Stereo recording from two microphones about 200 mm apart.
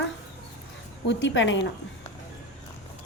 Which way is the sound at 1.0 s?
70° left (ahead or behind).